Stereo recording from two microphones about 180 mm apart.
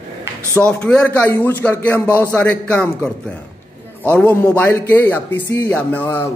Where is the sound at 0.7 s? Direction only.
5° left (ahead or behind).